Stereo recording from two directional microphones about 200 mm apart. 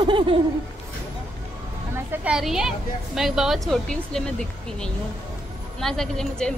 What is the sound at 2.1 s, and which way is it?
A woman's voice, 5° right (ahead or behind).